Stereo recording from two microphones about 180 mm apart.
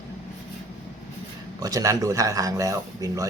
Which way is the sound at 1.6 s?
20° right (ahead or behind).